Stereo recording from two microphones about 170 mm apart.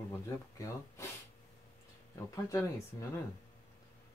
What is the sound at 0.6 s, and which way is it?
Speech, 20° left (ahead or behind).